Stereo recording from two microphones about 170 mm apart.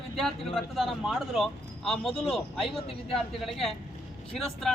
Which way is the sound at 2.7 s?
35° left (ahead or behind).